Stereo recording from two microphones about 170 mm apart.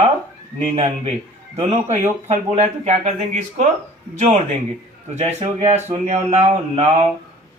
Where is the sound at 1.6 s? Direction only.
40° right (ahead or behind).